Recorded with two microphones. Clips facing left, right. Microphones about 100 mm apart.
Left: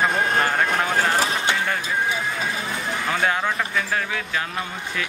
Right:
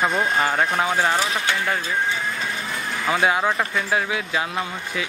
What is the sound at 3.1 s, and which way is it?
Speech, 10° right (ahead or behind).